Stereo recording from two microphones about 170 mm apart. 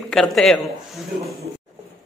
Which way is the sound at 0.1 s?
5° left (ahead or behind).